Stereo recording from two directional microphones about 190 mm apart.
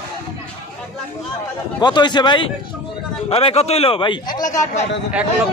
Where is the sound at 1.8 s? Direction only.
25° left (ahead or behind).